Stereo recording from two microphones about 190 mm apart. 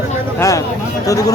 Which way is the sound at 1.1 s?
20° left (ahead or behind).